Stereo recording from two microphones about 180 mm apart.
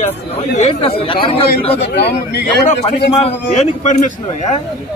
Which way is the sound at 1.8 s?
65° left (ahead or behind).